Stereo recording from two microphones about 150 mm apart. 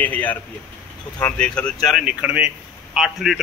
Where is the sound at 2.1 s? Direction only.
10° right (ahead or behind).